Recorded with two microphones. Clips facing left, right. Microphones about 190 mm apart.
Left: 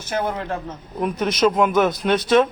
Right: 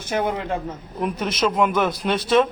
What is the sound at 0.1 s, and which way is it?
Speech, 15° right (ahead or behind).